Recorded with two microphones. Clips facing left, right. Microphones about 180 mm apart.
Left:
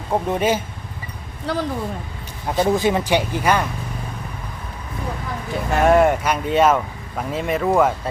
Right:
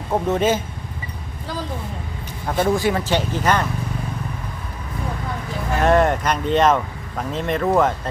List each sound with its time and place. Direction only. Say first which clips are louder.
0.1 s speech: right 1 dB; 10° left (ahead or behind)
1.5 s speech: left 5 dB; 70° left (ahead or behind)
2.6 s speech: left 1 dB; 20° left (ahead or behind)
5.8 s speech: left 2 dB; 10° left (ahead or behind)